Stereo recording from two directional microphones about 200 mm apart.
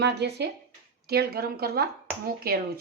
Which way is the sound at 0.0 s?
55° right (ahead or behind).